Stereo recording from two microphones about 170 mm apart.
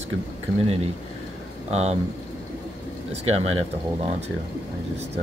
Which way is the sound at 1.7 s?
40° right (ahead or behind).